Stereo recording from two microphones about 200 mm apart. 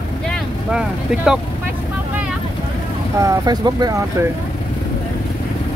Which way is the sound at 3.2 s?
20° right (ahead or behind).